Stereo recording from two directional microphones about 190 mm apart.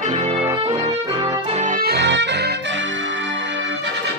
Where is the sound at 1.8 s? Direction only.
65° right (ahead or behind).